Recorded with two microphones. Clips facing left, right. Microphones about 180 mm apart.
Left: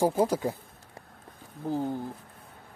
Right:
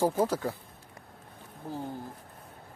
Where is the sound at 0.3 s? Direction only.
15° left (ahead or behind).